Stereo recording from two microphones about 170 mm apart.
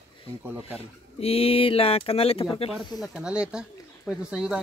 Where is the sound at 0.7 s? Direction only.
35° left (ahead or behind).